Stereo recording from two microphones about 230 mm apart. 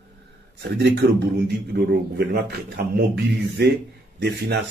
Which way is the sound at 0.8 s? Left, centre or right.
Right.